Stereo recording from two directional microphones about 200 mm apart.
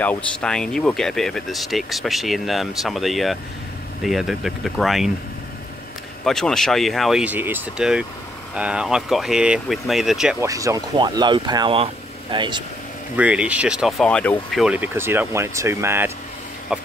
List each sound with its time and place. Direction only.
0.0 s speech: 5° left (ahead or behind)
6.2 s speech: centre (ahead or behind)
10.4 s speech: 15° right (ahead or behind)
13.1 s speech: 5° right (ahead or behind)
14.6 s speech: 10° right (ahead or behind)